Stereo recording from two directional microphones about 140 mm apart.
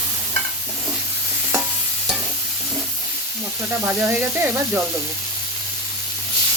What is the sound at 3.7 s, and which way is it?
Speech, 10° right (ahead or behind).